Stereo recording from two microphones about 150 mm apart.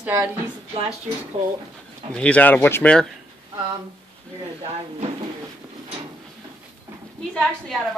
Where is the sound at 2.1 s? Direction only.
10° left (ahead or behind).